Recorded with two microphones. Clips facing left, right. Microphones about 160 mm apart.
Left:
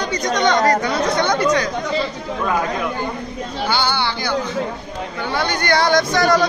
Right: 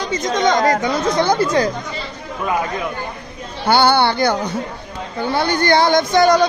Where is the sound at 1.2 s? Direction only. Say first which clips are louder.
Right 3 dB; 30° right (ahead or behind).